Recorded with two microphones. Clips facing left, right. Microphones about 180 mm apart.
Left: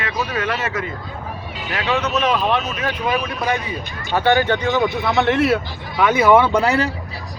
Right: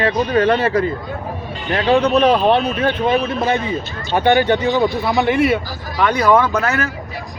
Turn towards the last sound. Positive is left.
turn(degrees=15)  # may be behind; listen again after turning